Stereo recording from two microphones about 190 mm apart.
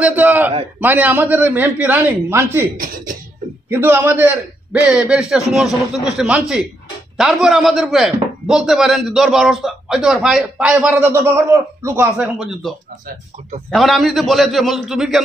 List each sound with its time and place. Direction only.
0.0 s a sound: 10° right (ahead or behind)
0.7 s a man's voice: 10° right (ahead or behind)
3.7 s a man's voice: 10° right (ahead or behind)